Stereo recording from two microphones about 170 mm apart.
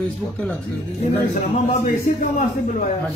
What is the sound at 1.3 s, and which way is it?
A man's voice, 50° left (ahead or behind).